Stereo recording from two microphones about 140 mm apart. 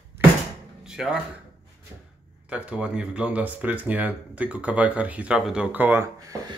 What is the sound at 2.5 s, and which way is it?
Speech, 10° right (ahead or behind).